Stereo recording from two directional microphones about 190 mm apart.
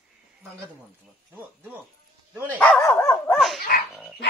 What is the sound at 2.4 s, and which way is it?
Dog, 10° left (ahead or behind).